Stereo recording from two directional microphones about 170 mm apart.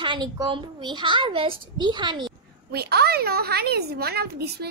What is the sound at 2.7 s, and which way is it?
A woman's voice, 70° right (ahead or behind).